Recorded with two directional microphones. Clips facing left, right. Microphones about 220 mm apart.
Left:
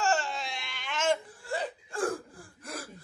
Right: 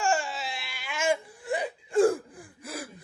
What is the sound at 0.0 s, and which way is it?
Baby cry, 10° right (ahead or behind).